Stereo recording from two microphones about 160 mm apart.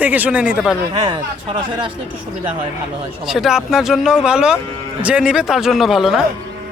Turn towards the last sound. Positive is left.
turn(degrees=0)  # may be behind; listen again after turning